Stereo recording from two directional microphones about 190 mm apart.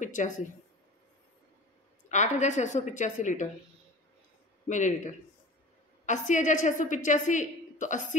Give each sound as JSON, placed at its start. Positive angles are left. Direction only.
{"t": 0.0, "sound": "speech", "side_deg": 40}
{"t": 2.0, "sound": "a woman's voice", "side_deg": 40}
{"t": 4.6, "sound": "a woman's voice", "side_deg": 40}